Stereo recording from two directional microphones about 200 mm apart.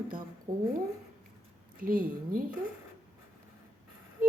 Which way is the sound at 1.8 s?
45° right (ahead or behind).